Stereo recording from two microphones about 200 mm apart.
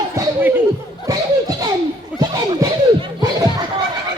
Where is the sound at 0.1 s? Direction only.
10° right (ahead or behind).